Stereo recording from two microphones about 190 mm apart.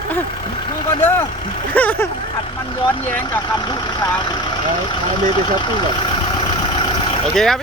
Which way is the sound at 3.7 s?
25° left (ahead or behind).